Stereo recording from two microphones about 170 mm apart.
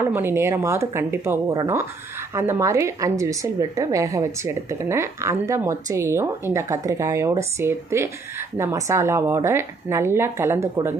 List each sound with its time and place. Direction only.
0.1 s a woman's voice: 15° right (ahead or behind)